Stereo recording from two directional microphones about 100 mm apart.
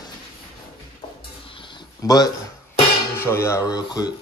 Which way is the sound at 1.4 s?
60° left (ahead or behind).